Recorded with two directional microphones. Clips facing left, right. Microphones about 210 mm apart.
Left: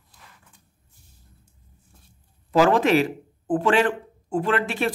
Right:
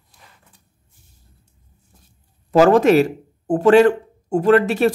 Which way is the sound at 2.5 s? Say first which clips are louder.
Right 6 dB; 45° right (ahead or behind).